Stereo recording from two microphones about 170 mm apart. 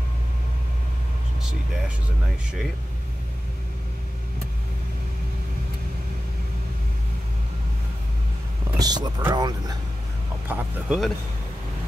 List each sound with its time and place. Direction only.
8.7 s speech: 25° right (ahead or behind)
10.5 s speech: 5° right (ahead or behind)